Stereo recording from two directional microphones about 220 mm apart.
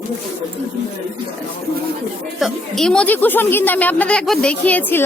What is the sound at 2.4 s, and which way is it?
A woman's voice, centre (ahead or behind).